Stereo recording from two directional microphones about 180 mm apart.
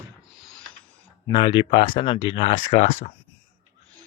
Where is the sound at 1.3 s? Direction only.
25° left (ahead or behind).